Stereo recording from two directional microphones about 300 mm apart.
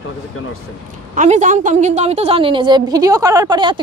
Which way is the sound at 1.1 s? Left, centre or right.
Right.